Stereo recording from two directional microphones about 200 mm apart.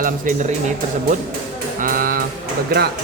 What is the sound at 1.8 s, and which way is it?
Mantra, 45° right (ahead or behind).